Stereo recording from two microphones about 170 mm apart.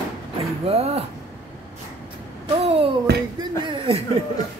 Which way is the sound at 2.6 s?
35° right (ahead or behind).